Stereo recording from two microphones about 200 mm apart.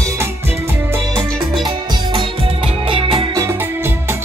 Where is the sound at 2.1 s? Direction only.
30° right (ahead or behind).